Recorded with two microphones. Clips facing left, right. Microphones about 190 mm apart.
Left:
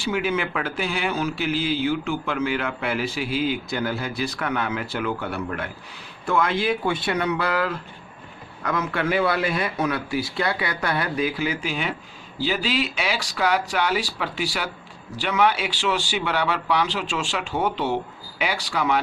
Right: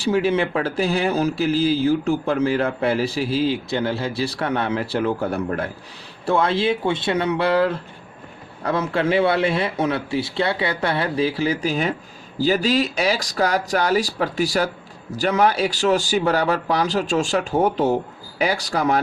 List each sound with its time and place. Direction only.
0.0 s speech: 35° right (ahead or behind)